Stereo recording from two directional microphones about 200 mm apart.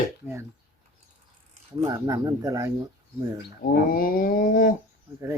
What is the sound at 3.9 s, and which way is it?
Speech, 45° left (ahead or behind).